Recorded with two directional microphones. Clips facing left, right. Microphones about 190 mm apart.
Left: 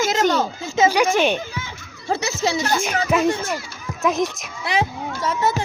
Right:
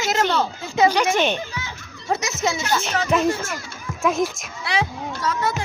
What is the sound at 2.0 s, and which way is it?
Speech, 30° left (ahead or behind).